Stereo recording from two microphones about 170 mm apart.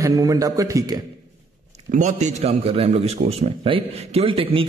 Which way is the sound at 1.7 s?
45° right (ahead or behind).